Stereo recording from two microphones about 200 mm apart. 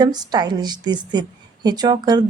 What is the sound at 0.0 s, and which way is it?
A woman's voice, 20° right (ahead or behind).